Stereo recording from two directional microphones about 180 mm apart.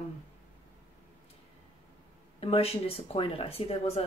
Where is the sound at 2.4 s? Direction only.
35° left (ahead or behind).